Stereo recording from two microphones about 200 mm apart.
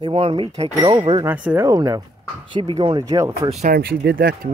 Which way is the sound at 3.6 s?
50° right (ahead or behind).